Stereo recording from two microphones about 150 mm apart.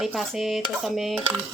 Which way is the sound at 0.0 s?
Centre (ahead or behind).